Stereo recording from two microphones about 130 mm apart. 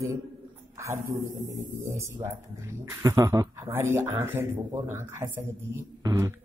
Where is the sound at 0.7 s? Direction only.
20° right (ahead or behind).